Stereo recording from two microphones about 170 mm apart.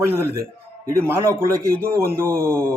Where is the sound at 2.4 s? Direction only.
15° right (ahead or behind).